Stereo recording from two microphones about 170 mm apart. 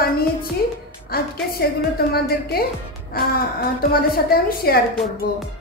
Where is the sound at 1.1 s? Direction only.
65° left (ahead or behind).